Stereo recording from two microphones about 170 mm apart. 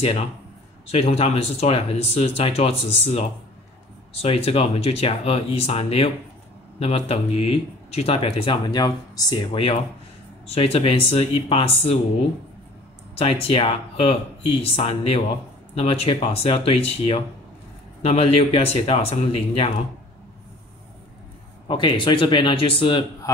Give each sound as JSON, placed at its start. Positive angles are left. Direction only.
{"t": 0.8, "sound": "speech", "side_deg": 35}
{"t": 13.1, "sound": "speech", "side_deg": 35}
{"t": 21.6, "sound": "a man's voice", "side_deg": 30}